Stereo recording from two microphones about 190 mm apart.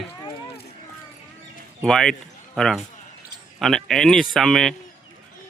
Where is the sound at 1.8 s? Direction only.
Centre (ahead or behind).